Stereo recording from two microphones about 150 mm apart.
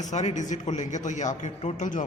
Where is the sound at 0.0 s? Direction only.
50° left (ahead or behind).